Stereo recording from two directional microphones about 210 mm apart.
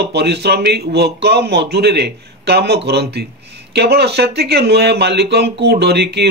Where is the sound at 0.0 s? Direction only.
50° right (ahead or behind).